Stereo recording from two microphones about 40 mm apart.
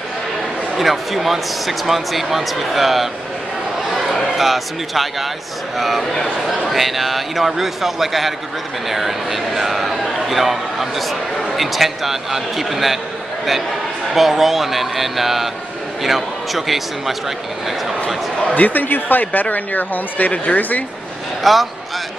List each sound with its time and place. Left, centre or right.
0.7 s speech: centre
4.4 s a man's voice: centre
14.1 s speech: centre
18.5 s speech: left
21.4 s a man's voice: centre